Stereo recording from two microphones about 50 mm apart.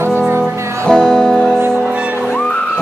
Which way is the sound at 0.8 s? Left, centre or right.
Centre.